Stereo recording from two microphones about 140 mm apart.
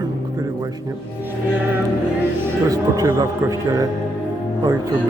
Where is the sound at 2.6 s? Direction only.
25° right (ahead or behind).